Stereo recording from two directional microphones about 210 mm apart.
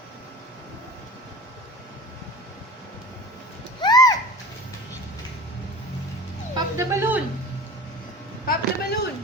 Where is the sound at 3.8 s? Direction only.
20° left (ahead or behind).